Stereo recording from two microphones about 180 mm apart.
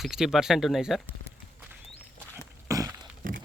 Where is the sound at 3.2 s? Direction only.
50° right (ahead or behind).